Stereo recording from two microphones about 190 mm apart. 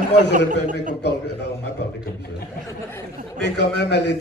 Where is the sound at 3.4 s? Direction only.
65° left (ahead or behind).